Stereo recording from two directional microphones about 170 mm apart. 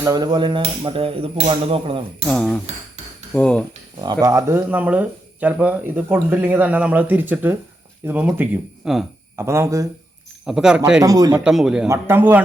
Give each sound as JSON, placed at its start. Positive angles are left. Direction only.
{"t": 0.0, "sound": "speech", "side_deg": -25}
{"t": 2.2, "sound": "a man's voice", "side_deg": 5}
{"t": 4.0, "sound": "speech", "side_deg": -20}
{"t": 9.3, "sound": "speech", "side_deg": -15}
{"t": 10.4, "sound": "a man's voice", "side_deg": -5}
{"t": 11.0, "sound": "speech", "side_deg": -20}
{"t": 11.4, "sound": "a man's voice", "side_deg": -5}